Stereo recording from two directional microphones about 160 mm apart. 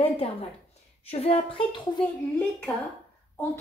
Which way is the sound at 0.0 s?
35° left (ahead or behind).